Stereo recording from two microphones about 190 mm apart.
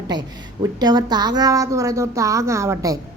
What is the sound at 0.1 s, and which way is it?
Speech, 20° right (ahead or behind).